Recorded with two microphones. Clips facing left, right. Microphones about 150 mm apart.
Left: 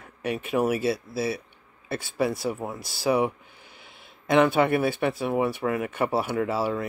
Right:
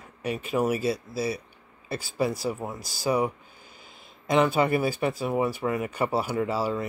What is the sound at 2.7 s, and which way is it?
Speech, 25° left (ahead or behind).